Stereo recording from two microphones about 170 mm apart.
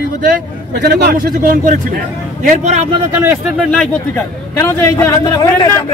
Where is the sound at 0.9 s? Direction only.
65° right (ahead or behind).